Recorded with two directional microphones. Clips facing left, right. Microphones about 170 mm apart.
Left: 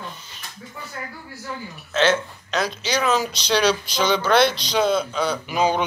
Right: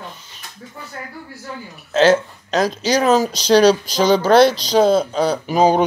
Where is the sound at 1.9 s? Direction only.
40° right (ahead or behind).